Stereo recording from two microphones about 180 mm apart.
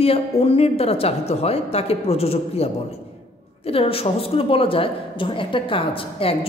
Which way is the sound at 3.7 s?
30° left (ahead or behind).